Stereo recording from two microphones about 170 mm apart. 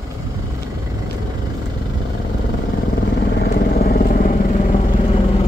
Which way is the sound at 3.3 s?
65° left (ahead or behind).